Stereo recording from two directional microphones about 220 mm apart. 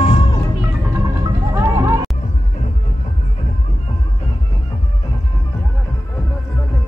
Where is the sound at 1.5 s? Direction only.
15° right (ahead or behind).